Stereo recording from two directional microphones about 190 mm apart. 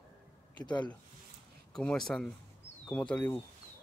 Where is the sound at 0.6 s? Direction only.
25° left (ahead or behind).